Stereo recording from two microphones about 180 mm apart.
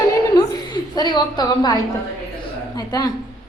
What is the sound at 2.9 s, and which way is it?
Speech, 20° left (ahead or behind).